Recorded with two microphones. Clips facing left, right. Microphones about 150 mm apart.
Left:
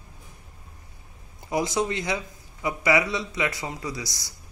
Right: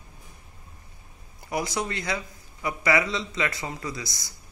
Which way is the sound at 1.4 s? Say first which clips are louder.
Left 4 dB; 20° left (ahead or behind).